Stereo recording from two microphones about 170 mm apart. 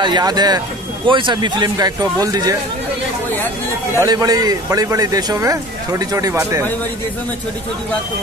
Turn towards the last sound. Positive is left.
turn(degrees=-15)  # may be behind; listen again after turning